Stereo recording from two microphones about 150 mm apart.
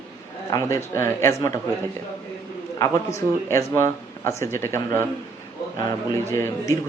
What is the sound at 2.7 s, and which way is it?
Speech, 20° left (ahead or behind).